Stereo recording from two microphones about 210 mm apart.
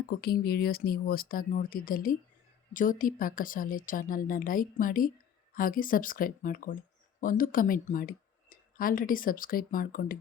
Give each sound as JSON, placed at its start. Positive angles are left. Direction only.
{"t": 0.1, "sound": "a woman's voice", "side_deg": 45}